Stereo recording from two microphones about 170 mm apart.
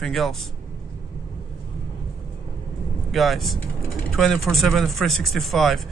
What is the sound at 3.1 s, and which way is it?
A man's voice, centre (ahead or behind).